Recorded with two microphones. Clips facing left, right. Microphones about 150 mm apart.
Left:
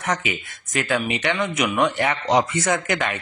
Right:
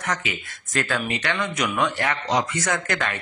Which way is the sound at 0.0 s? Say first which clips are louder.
Left 3 dB; 25° left (ahead or behind).